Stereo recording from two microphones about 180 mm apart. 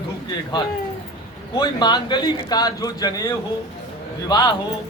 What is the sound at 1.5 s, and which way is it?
A man's voice, 25° left (ahead or behind).